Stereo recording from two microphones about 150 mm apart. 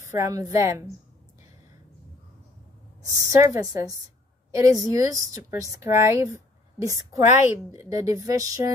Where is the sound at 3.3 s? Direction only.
20° right (ahead or behind).